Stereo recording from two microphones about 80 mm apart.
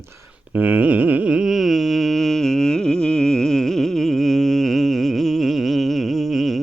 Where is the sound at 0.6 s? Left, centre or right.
Right.